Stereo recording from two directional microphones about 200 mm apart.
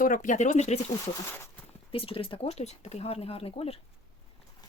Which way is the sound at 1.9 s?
25° left (ahead or behind).